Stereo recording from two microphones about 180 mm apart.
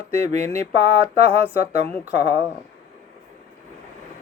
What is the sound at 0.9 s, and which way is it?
Speech, 30° right (ahead or behind).